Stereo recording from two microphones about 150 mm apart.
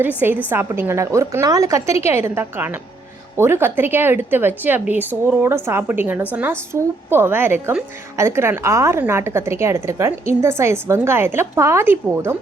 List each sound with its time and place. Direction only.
0.5 s a woman's voice: 15° right (ahead or behind)